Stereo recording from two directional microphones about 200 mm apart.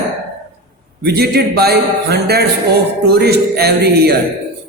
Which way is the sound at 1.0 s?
55° right (ahead or behind).